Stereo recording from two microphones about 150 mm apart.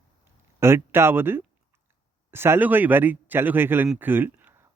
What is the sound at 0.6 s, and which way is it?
A man's voice, 15° right (ahead or behind).